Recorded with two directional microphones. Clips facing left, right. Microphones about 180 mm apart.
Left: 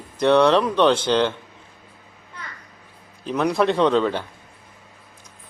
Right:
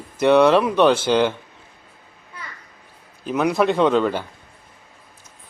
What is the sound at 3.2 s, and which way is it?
A man's voice, 5° right (ahead or behind).